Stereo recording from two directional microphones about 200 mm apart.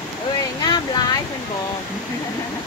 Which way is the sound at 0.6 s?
20° left (ahead or behind).